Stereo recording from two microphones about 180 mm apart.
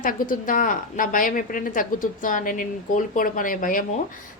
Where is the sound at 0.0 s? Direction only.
50° left (ahead or behind).